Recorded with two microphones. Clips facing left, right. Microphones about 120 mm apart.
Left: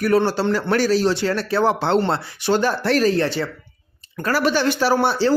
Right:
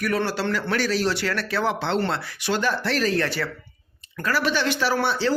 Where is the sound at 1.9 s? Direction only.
30° left (ahead or behind).